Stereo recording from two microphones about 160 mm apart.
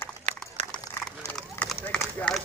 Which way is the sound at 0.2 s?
45° right (ahead or behind).